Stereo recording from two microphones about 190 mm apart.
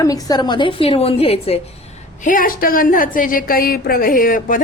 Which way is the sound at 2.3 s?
45° left (ahead or behind).